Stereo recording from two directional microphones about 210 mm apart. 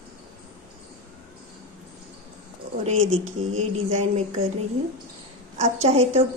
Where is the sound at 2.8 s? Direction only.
35° right (ahead or behind).